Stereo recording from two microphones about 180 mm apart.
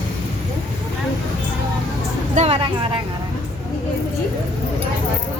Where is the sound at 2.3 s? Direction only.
35° right (ahead or behind).